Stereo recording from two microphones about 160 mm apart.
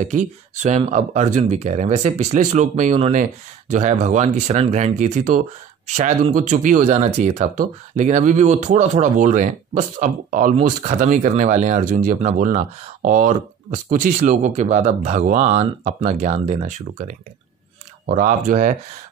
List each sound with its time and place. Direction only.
0.0 s speech: 50° right (ahead or behind)